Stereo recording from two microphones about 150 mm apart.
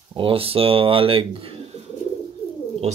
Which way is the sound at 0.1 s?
40° right (ahead or behind).